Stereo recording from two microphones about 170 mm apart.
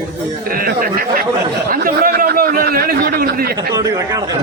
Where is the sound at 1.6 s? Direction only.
55° right (ahead or behind).